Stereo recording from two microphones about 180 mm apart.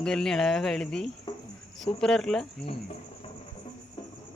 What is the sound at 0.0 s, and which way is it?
Speech, 5° left (ahead or behind).